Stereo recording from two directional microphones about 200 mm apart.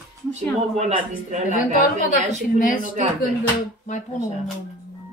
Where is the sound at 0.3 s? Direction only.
35° right (ahead or behind).